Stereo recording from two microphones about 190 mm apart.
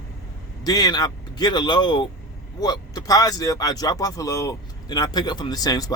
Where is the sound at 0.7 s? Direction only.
20° left (ahead or behind).